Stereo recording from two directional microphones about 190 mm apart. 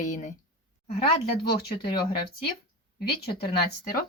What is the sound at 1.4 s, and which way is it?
Speech, 25° left (ahead or behind).